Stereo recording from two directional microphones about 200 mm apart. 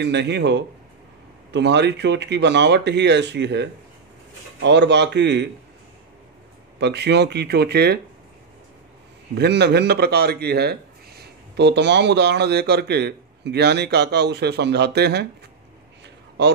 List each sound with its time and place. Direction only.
0.0 s a man's voice: 60° right (ahead or behind)
6.8 s a man's voice: 55° right (ahead or behind)
9.3 s a man's voice: 55° right (ahead or behind)